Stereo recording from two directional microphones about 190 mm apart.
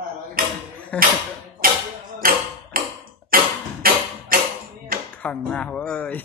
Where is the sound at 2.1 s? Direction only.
45° right (ahead or behind).